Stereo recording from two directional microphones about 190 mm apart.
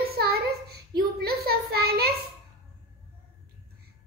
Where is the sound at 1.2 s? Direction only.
55° right (ahead or behind).